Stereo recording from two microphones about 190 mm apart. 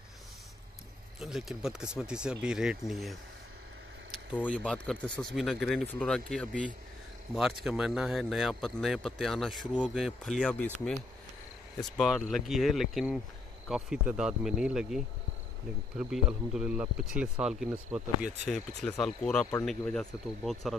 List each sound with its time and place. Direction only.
1.2 s speech: centre (ahead or behind)
4.3 s speech: 10° left (ahead or behind)